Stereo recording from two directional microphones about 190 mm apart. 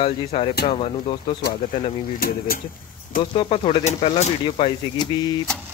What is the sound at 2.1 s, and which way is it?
Speech, 50° left (ahead or behind).